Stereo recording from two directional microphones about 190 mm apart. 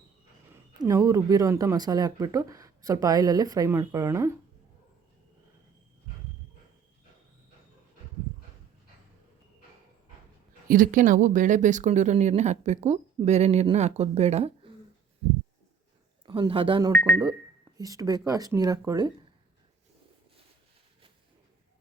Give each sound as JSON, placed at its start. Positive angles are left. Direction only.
{"t": 0.5, "sound": "speech", "side_deg": -15}
{"t": 10.7, "sound": "speech", "side_deg": -45}
{"t": 16.2, "sound": "speech", "side_deg": -25}
{"t": 16.9, "sound": "speech", "side_deg": 5}
{"t": 17.7, "sound": "speech", "side_deg": -20}